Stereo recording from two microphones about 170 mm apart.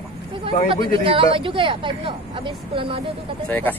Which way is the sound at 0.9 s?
30° right (ahead or behind).